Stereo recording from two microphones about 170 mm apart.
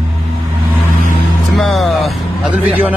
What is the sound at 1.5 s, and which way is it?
Speech, centre (ahead or behind).